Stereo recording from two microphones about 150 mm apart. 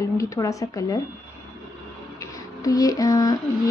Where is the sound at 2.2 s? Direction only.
25° left (ahead or behind).